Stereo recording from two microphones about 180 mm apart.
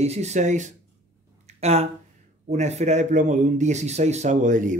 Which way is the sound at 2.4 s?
40° right (ahead or behind).